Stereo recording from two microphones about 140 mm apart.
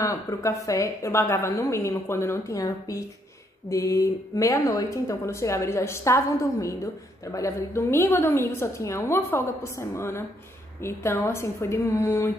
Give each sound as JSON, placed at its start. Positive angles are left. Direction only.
{"t": 0.0, "sound": "speech", "side_deg": 25}